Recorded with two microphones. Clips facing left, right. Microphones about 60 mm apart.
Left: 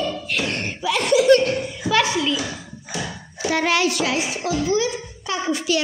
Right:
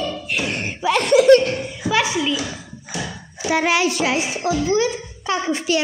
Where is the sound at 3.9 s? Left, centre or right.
Right.